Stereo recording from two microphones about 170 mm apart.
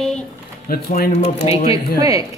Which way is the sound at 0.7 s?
60° left (ahead or behind).